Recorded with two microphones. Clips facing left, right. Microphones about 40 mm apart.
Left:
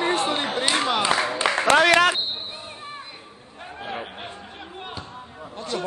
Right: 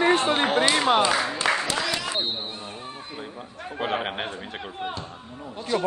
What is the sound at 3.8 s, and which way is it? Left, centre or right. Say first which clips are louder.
Speech: right 6 dB; right.